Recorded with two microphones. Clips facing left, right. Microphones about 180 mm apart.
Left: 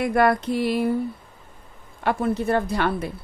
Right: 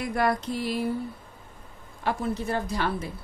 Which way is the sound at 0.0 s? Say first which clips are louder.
Left 6 dB; 65° left (ahead or behind).